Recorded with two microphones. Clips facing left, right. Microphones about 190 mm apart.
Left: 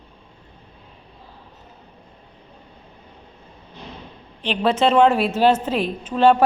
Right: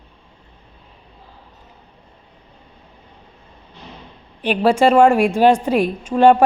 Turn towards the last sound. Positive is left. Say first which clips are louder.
# right 3 dB
turn(degrees=-10)  # may be behind; listen again after turning